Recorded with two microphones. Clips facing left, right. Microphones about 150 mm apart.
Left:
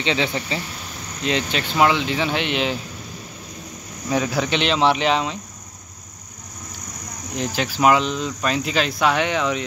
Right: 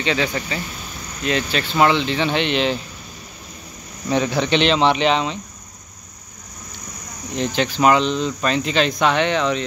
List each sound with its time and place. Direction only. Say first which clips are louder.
0.0 s speech: right 1 dB; 20° left (ahead or behind)
4.1 s speech: right 3 dB; 5° left (ahead or behind)
7.3 s speech: right 3 dB; 5° left (ahead or behind)